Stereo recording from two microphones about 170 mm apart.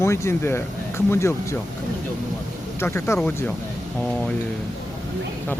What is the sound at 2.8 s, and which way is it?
Speech, 15° left (ahead or behind).